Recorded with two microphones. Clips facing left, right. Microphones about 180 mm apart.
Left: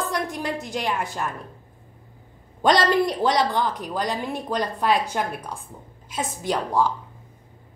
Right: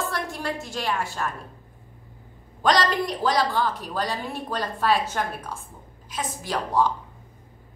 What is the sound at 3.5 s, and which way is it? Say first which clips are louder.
A woman's voice: left 1 dB; 15° left (ahead or behind).